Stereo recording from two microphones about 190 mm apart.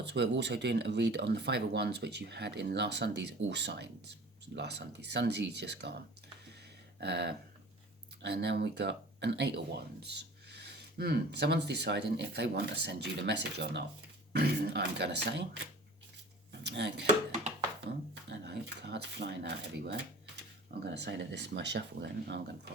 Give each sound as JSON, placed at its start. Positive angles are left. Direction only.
{"t": 0.0, "sound": "speech", "side_deg": -65}
{"t": 7.0, "sound": "speech", "side_deg": -60}
{"t": 16.5, "sound": "speech", "side_deg": -65}
{"t": 18.3, "sound": "speech", "side_deg": -60}